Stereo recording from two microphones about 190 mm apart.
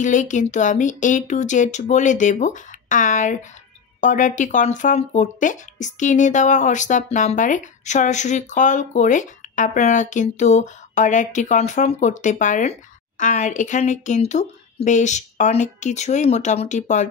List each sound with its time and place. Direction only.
0.0 s speech: 40° left (ahead or behind)